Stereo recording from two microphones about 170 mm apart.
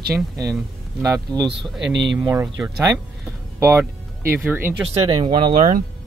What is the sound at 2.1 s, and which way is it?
Speech, 15° right (ahead or behind).